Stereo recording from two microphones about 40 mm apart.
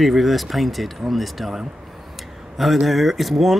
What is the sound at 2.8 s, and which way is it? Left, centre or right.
Speech, centre.